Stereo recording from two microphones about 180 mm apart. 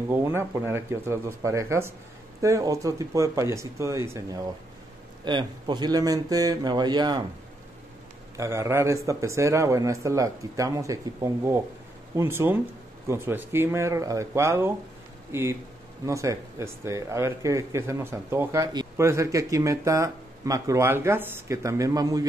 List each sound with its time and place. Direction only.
0.1 s speech: 15° right (ahead or behind)
8.4 s speech: 15° right (ahead or behind)